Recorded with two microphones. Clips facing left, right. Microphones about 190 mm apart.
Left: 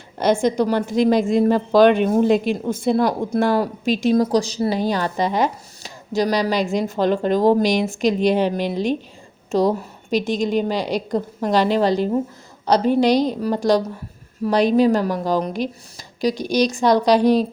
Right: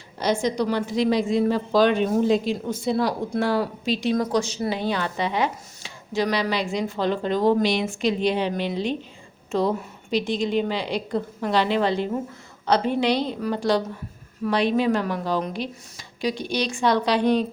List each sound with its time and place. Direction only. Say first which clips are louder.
0.2 s speech: left 5 dB; 50° left (ahead or behind)
4.1 s a woman's voice: left 5 dB; 35° left (ahead or behind)